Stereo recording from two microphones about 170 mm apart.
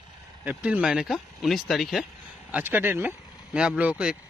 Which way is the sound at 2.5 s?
10° right (ahead or behind).